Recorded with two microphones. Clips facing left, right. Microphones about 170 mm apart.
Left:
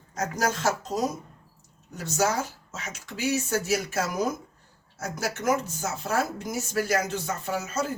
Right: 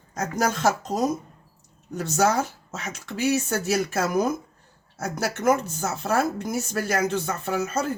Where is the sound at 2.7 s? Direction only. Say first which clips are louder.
Right 5 dB; 65° right (ahead or behind).